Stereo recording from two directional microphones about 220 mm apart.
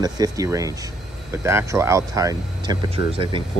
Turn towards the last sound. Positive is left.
turn(degrees=-25)  # may be behind; listen again after turning